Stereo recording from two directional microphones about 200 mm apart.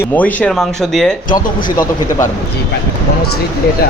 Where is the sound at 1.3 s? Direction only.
45° left (ahead or behind).